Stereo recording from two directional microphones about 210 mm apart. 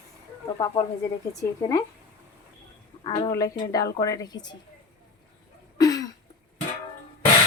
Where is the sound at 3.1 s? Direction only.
15° left (ahead or behind).